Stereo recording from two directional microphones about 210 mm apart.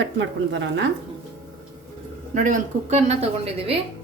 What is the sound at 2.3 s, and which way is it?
Speech, 35° right (ahead or behind).